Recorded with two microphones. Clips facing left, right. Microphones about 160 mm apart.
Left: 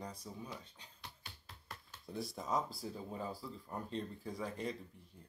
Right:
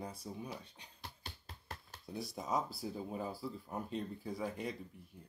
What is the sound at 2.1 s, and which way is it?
Speech, centre (ahead or behind).